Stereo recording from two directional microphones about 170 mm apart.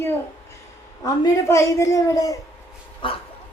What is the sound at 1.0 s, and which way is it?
A woman's voice, 20° left (ahead or behind).